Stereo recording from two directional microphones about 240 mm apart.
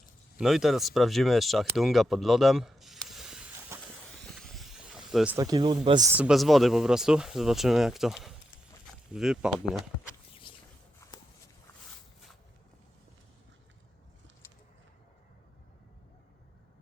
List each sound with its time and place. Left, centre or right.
0.3 s speech: centre
4.2 s a sound: centre
5.4 s speech: centre
10.5 s walk: centre